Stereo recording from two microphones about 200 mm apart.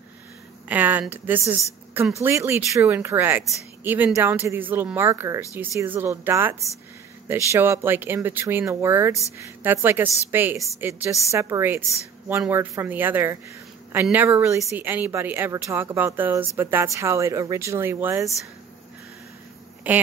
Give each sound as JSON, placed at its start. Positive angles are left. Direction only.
{"t": 0.7, "sound": "speech", "side_deg": -10}
{"t": 19.9, "sound": "speech", "side_deg": -10}